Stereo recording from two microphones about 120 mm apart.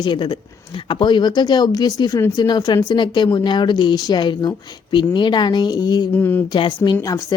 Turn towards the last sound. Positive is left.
turn(degrees=25)  # may be behind; listen again after turning